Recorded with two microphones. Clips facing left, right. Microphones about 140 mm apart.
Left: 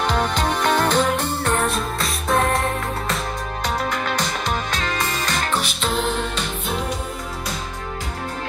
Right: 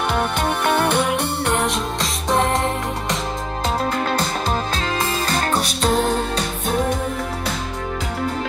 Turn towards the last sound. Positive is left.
turn(degrees=-40)  # may be behind; listen again after turning